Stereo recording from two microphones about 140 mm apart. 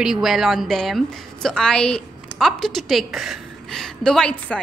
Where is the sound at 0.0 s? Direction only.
5° right (ahead or behind).